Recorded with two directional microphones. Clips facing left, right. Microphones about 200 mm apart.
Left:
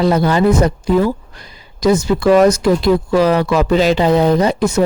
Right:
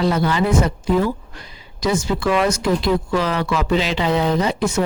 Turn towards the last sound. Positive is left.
turn(degrees=40)  # may be behind; listen again after turning